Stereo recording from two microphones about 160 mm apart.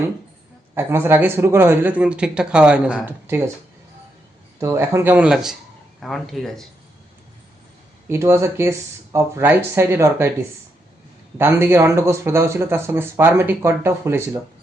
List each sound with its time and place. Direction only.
0.8 s speech: 15° right (ahead or behind)
4.6 s speech: 15° right (ahead or behind); by 6.7 s centre (ahead or behind)
8.1 s speech: 15° right (ahead or behind)
11.3 s speech: 15° right (ahead or behind)